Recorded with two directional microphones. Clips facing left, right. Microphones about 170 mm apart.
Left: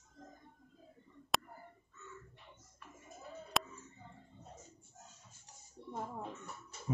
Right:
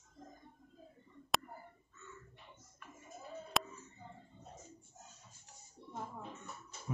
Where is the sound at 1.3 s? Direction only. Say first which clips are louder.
Even; centre (ahead or behind).